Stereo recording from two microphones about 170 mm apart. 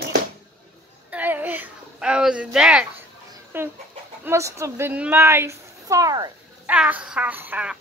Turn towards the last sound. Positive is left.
turn(degrees=-10)  # may be behind; listen again after turning